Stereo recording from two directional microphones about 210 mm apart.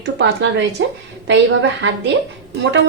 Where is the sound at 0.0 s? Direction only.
55° right (ahead or behind).